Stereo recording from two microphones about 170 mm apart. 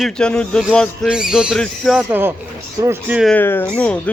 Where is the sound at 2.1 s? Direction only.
10° right (ahead or behind).